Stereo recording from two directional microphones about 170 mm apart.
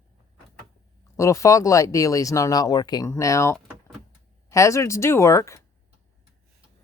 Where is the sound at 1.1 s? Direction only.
20° left (ahead or behind).